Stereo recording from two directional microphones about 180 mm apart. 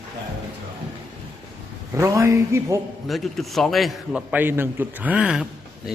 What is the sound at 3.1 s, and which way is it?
A man's voice, centre (ahead or behind).